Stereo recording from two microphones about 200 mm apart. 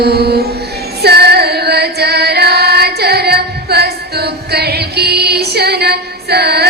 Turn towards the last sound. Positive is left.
turn(degrees=-55)  # may be behind; listen again after turning